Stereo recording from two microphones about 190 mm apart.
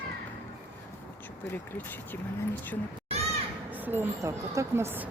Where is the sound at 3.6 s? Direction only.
10° right (ahead or behind).